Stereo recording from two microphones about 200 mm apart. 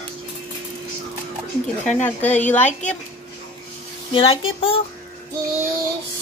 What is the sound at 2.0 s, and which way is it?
Speech, 10° left (ahead or behind).